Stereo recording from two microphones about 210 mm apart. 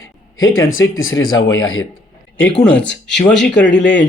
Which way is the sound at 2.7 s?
55° left (ahead or behind).